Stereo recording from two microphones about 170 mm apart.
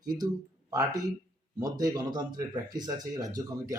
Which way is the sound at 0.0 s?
25° right (ahead or behind).